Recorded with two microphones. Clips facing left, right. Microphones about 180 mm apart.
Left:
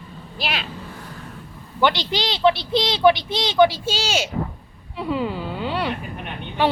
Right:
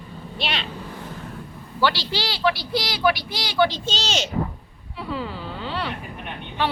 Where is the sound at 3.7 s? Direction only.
10° left (ahead or behind).